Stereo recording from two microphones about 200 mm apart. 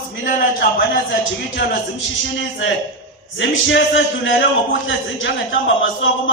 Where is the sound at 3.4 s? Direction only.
65° left (ahead or behind).